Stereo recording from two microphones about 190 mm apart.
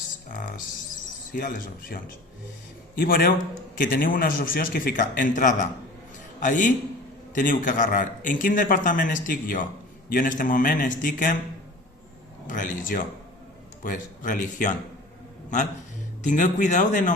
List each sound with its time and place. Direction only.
0.3 s music: 45° left (ahead or behind)
1.3 s a man's voice: 50° left (ahead or behind)
12.5 s a man's voice: 45° left (ahead or behind)
16.2 s speech: 40° left (ahead or behind)